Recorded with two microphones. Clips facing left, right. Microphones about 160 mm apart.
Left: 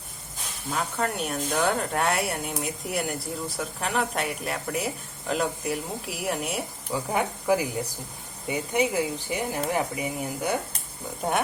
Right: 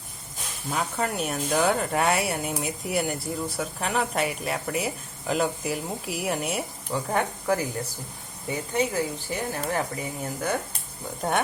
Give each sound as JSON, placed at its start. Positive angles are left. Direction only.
{"t": 0.7, "sound": "speech", "side_deg": 0}